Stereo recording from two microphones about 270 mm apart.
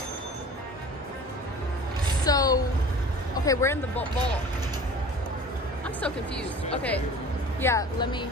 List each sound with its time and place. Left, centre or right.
2.2 s a sound: centre
3.3 s speech: centre
6.7 s speech: centre